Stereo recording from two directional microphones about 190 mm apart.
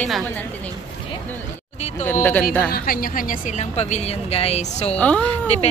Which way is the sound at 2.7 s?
50° left (ahead or behind).